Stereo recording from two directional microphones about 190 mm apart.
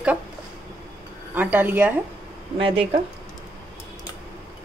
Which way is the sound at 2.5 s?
30° right (ahead or behind).